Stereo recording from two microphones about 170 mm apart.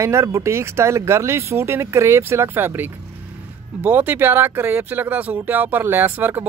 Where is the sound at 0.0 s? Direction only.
15° right (ahead or behind).